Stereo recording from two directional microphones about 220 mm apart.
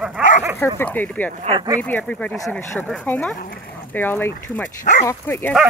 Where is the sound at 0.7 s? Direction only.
10° left (ahead or behind).